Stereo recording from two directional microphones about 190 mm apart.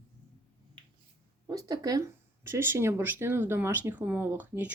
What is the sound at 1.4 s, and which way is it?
Speech, 20° right (ahead or behind).